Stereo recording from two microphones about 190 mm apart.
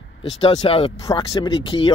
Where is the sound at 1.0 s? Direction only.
15° left (ahead or behind).